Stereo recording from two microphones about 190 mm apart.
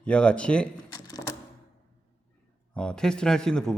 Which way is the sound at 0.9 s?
20° left (ahead or behind).